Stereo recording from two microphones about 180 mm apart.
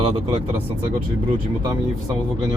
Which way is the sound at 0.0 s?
30° right (ahead or behind).